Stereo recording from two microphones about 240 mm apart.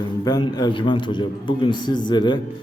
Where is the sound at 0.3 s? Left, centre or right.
Centre.